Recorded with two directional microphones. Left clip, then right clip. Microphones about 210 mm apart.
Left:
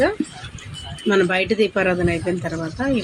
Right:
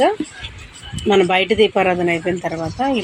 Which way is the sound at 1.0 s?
Centre (ahead or behind).